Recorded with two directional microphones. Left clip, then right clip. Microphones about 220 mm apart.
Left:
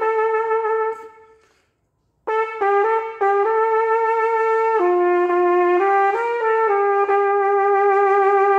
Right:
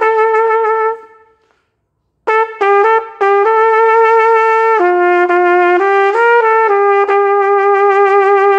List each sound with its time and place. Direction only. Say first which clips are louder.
0.0 s music: right 8 dB; 45° right (ahead or behind)
2.2 s trumpet: right 8 dB; 40° right (ahead or behind)